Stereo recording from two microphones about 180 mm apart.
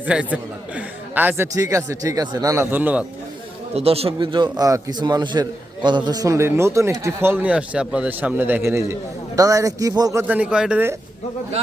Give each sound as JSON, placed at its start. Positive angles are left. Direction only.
{"t": 0.0, "sound": "a man's voice", "side_deg": -5}
{"t": 3.8, "sound": "a man's voice", "side_deg": -35}